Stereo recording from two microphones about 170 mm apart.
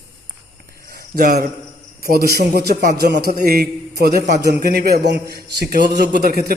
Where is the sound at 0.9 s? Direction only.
55° right (ahead or behind).